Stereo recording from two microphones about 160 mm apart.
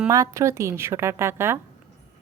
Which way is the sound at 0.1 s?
20° right (ahead or behind).